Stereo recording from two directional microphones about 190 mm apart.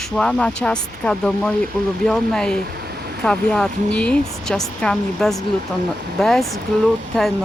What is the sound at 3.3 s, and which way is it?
Speech, 5° left (ahead or behind).